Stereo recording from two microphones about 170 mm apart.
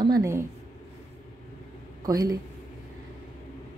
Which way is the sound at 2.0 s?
20° right (ahead or behind).